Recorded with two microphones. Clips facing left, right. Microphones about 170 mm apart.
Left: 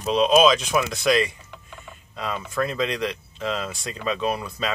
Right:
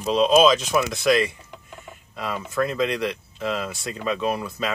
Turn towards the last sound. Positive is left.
turn(degrees=-5)  # may be behind; listen again after turning